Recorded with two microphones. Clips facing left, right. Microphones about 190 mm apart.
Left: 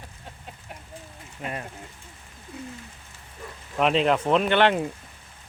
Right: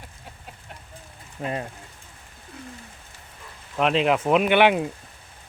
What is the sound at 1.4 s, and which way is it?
Speech, 25° right (ahead or behind).